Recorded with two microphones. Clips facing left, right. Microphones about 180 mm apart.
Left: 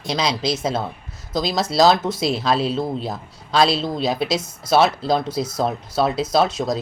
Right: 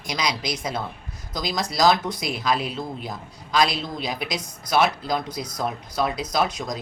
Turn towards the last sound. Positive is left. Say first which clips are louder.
# left 6 dB
turn(degrees=25)  # may be behind; listen again after turning